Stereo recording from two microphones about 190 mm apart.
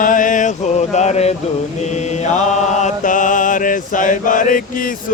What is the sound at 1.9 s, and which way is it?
Mantra, 35° left (ahead or behind).